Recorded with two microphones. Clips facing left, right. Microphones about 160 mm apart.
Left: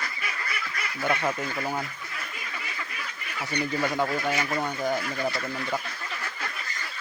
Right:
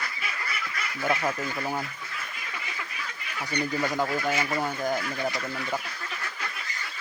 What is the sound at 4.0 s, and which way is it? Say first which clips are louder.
Speech: even; 5° right (ahead or behind).